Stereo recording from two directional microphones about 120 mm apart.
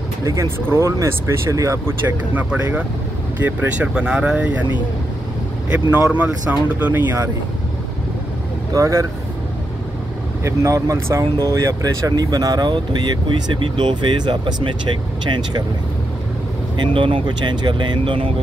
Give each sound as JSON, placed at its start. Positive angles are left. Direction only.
{"t": 0.2, "sound": "speech", "side_deg": -30}
{"t": 5.7, "sound": "speech", "side_deg": -15}
{"t": 8.7, "sound": "speech", "side_deg": -25}
{"t": 10.4, "sound": "speech", "side_deg": -25}
{"t": 16.7, "sound": "speech", "side_deg": -45}